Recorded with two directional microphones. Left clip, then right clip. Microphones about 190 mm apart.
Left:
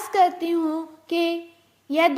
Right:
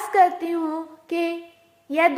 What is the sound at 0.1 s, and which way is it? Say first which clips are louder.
A woman's voice: right 1 dB; 25° left (ahead or behind).